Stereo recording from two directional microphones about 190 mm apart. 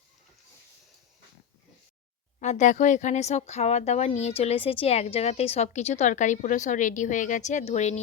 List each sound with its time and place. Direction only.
2.4 s speech: 40° left (ahead or behind)